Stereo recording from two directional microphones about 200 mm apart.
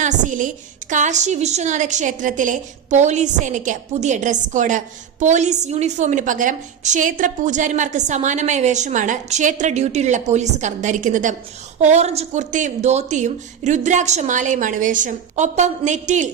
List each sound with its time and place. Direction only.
0.0 s a woman's voice: 40° right (ahead or behind)